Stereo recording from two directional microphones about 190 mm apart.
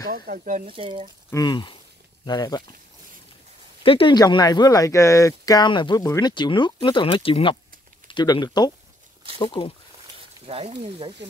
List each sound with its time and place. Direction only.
0.1 s speech: 45° right (ahead or behind)
0.7 s speech: 30° right (ahead or behind)
1.3 s speech: 20° left (ahead or behind)
3.8 s speech: 30° left (ahead or behind)
10.4 s speech: 30° right (ahead or behind)